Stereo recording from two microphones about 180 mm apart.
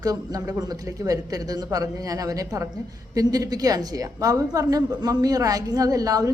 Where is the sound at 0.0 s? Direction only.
20° right (ahead or behind).